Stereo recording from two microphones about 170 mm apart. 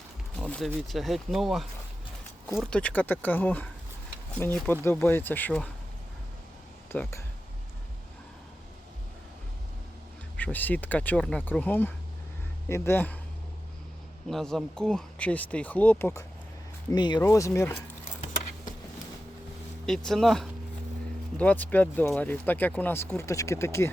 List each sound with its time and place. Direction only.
0.4 s speech: 5° left (ahead or behind)
6.9 s speech: 15° left (ahead or behind)
10.3 s speech: 10° left (ahead or behind)
14.3 s speech: centre (ahead or behind)
16.9 s speech: 25° left (ahead or behind)
20.1 s speech: centre (ahead or behind)